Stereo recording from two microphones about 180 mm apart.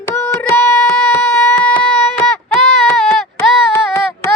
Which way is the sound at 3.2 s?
Centre (ahead or behind).